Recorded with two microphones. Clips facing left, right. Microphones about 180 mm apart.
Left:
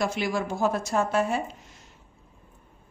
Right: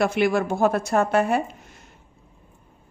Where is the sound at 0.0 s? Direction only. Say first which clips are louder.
Right 6 dB; 60° right (ahead or behind).